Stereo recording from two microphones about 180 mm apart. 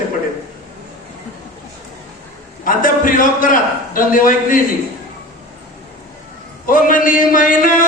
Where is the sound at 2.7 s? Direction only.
50° left (ahead or behind).